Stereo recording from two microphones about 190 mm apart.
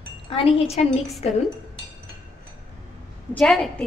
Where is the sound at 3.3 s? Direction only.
5° left (ahead or behind).